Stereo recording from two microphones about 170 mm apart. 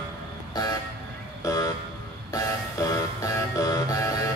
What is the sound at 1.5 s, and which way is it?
Vehicle, 20° left (ahead or behind).